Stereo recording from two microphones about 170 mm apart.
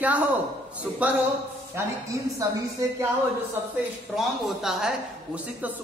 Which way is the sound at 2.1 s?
20° right (ahead or behind).